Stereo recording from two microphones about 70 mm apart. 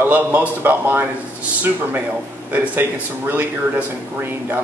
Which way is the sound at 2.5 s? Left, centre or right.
Right.